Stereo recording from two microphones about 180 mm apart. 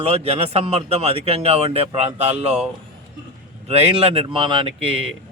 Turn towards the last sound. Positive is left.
turn(degrees=-30)  # may be behind; listen again after turning